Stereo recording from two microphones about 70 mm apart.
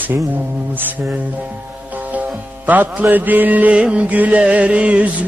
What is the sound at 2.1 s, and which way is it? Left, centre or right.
Music, right.